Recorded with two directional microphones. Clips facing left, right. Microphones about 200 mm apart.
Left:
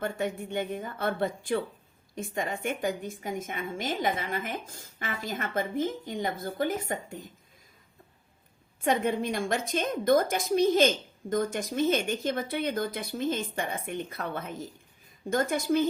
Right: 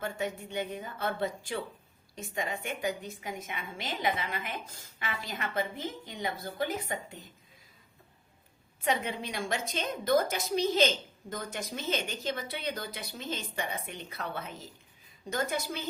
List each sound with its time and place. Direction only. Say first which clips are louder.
0.0 s a woman's voice: left 4 dB; 55° left (ahead or behind)
8.8 s a woman's voice: left 5 dB; 50° left (ahead or behind)